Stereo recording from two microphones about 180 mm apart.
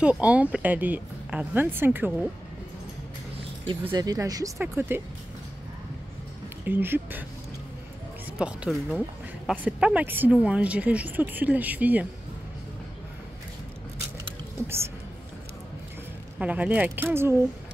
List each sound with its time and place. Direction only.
0.0 s speech: 5° right (ahead or behind)
3.9 s speech: 20° right (ahead or behind)
6.6 s speech: 10° right (ahead or behind)
8.4 s speech: 5° right (ahead or behind)
16.3 s speech: 10° right (ahead or behind)